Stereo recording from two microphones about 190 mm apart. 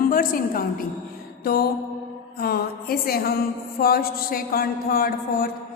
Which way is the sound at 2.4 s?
55° left (ahead or behind).